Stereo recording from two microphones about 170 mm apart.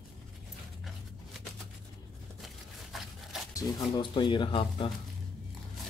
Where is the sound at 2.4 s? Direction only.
Centre (ahead or behind).